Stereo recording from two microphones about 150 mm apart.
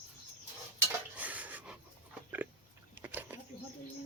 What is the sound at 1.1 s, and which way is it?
Dishes, 10° right (ahead or behind).